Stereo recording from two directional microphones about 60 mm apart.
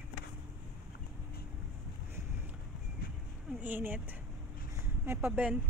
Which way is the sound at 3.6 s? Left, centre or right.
Right.